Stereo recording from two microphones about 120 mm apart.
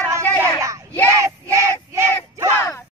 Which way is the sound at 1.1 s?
25° right (ahead or behind).